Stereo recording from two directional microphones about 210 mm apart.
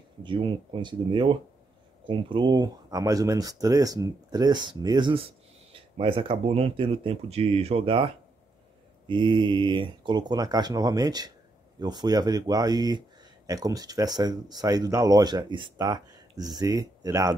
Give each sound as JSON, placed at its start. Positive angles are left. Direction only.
{"t": 0.2, "sound": "speech", "side_deg": -25}